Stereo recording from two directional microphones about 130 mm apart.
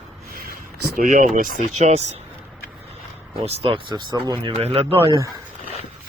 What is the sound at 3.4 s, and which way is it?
Speech, 50° right (ahead or behind).